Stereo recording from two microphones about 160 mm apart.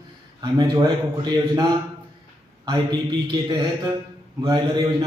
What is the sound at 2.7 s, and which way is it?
A man's voice, 25° right (ahead or behind).